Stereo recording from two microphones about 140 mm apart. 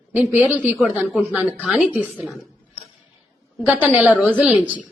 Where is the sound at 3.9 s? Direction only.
10° right (ahead or behind).